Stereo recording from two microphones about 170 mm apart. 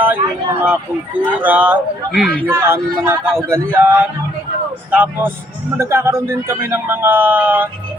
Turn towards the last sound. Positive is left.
turn(degrees=-10)  # may be behind; listen again after turning